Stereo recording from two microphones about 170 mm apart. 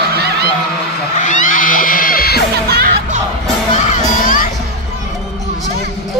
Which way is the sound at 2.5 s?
70° right (ahead or behind).